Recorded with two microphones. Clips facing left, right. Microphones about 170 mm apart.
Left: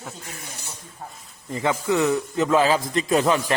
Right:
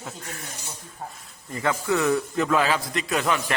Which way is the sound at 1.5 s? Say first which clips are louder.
Left 2 dB; 20° left (ahead or behind).